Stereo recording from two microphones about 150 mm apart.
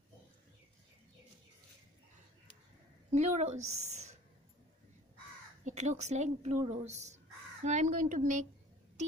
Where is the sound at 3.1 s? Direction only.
50° right (ahead or behind).